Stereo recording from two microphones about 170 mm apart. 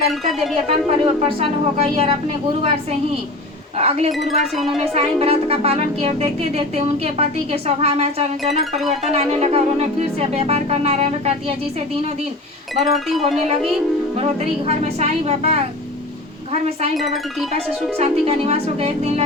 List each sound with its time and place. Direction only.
0.1 s speech: centre (ahead or behind)
0.7 s speech: 35° right (ahead or behind)
3.8 s speech: 40° right (ahead or behind)
4.5 s speech: centre (ahead or behind)
4.9 s speech: 35° right (ahead or behind)
12.7 s speech: centre (ahead or behind)
14.7 s speech: 40° right (ahead or behind)
17.9 s speech: 35° right (ahead or behind)